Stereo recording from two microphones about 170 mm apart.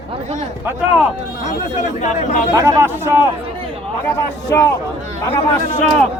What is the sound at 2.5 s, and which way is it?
Speech, 20° right (ahead or behind).